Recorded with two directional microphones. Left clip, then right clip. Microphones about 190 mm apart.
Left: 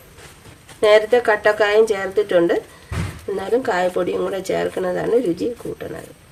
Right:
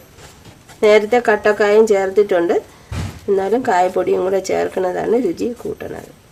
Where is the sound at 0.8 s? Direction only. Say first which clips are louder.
Right 1 dB; 50° right (ahead or behind).